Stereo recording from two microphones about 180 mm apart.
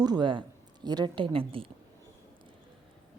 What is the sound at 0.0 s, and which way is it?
A woman's voice, 25° right (ahead or behind).